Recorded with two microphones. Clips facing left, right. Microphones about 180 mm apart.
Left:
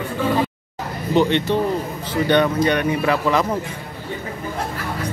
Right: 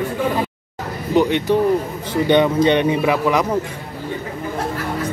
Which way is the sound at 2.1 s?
20° right (ahead or behind).